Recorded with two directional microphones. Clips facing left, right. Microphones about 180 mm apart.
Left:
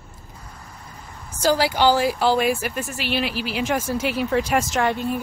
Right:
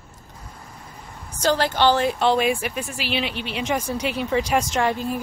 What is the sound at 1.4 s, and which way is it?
Speech, 10° left (ahead or behind).